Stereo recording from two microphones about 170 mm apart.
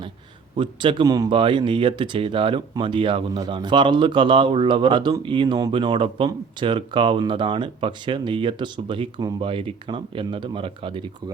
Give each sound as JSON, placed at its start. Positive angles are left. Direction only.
{"t": 0.5, "sound": "speech", "side_deg": -30}